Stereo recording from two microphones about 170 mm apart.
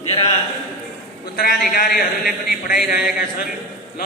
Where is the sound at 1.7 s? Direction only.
55° left (ahead or behind).